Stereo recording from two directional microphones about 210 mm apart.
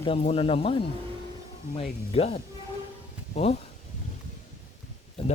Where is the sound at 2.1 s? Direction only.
30° left (ahead or behind).